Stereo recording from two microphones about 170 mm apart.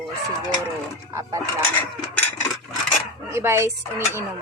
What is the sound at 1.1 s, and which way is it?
Dishes, 20° right (ahead or behind).